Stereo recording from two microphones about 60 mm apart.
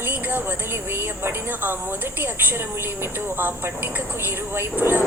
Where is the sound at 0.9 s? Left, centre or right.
Right.